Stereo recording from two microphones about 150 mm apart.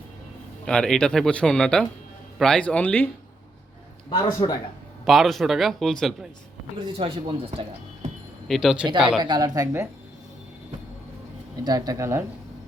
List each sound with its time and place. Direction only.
0.6 s speech: 5° left (ahead or behind)
4.1 s speech: 30° left (ahead or behind)
5.0 s speech: centre (ahead or behind)
6.7 s speech: 35° right (ahead or behind)
8.4 s speech: centre (ahead or behind)
9.2 s speech: 25° right (ahead or behind)
11.6 s speech: 25° right (ahead or behind)